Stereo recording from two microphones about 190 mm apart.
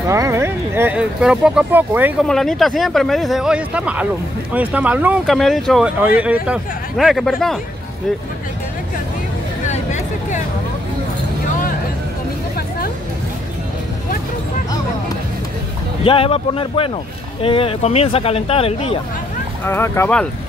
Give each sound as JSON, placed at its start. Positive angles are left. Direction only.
{"t": 0.1, "sound": "speech", "side_deg": -15}
{"t": 2.2, "sound": "speech", "side_deg": 0}
{"t": 9.7, "sound": "a sound", "side_deg": 40}
{"t": 16.0, "sound": "speech", "side_deg": 30}
{"t": 19.6, "sound": "speech", "side_deg": 10}